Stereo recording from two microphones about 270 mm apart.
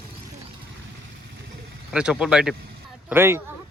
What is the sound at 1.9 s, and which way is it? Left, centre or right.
Speech, centre.